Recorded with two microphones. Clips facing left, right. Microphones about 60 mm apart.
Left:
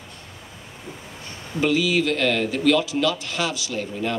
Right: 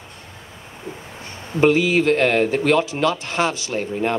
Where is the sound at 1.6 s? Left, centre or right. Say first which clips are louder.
Right 5 dB; right.